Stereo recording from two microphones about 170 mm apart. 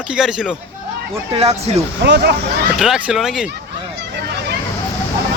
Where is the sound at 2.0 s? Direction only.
75° right (ahead or behind).